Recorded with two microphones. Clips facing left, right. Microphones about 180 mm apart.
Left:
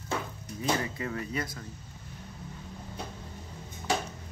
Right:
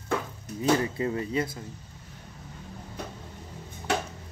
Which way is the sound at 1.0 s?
25° right (ahead or behind).